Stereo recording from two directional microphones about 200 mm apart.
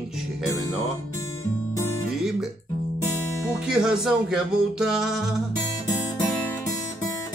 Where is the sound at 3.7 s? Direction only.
5° right (ahead or behind).